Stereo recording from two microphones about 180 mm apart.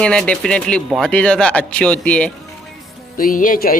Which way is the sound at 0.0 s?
5° left (ahead or behind).